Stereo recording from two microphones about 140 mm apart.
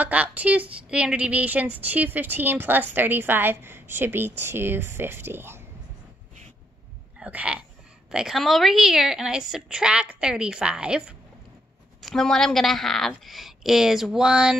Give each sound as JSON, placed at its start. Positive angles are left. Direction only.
{"t": 0.0, "sound": "speech", "side_deg": -10}
{"t": 7.2, "sound": "a sound", "side_deg": -10}
{"t": 8.1, "sound": "a woman's voice", "side_deg": -5}
{"t": 12.0, "sound": "a woman's voice", "side_deg": 5}